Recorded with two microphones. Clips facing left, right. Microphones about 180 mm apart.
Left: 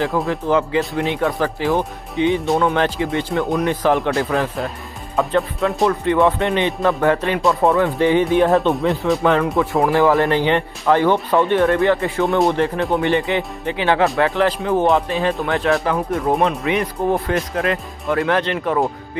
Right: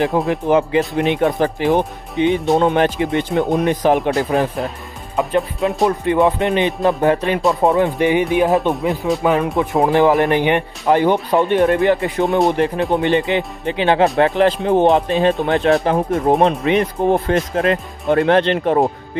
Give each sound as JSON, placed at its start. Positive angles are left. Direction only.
{"t": 0.3, "sound": "speech", "side_deg": -20}
{"t": 9.0, "sound": "speech", "side_deg": 0}
{"t": 9.6, "sound": "speech", "side_deg": -20}